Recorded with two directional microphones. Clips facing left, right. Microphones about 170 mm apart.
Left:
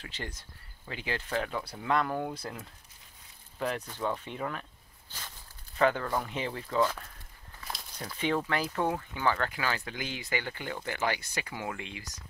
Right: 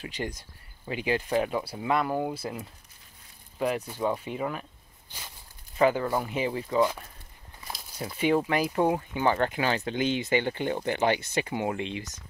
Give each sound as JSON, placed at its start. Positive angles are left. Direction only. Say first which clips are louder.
{"t": 0.0, "sound": "speech", "louder": "right 7 dB", "side_deg": -15}
{"t": 5.8, "sound": "speech", "louder": "right 4 dB", "side_deg": -10}
{"t": 8.2, "sound": "speech", "louder": "right 6 dB", "side_deg": -15}